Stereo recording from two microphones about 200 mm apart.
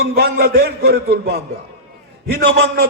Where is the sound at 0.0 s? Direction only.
50° right (ahead or behind).